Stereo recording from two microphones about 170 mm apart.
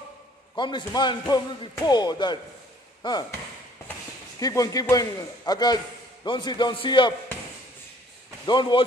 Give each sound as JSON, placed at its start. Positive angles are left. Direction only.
{"t": 0.6, "sound": "a man's voice", "side_deg": 25}
{"t": 4.4, "sound": "a man's voice", "side_deg": 20}
{"t": 8.5, "sound": "a man's voice", "side_deg": 25}